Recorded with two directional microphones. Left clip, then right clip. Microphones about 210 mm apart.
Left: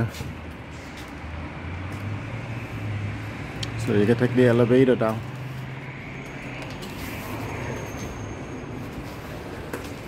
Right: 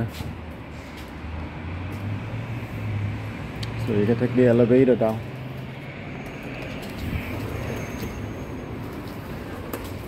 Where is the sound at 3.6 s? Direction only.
15° left (ahead or behind).